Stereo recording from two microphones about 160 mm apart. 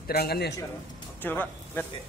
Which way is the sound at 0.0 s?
80° left.